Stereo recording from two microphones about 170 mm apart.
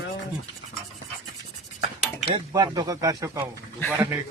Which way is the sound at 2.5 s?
20° right (ahead or behind).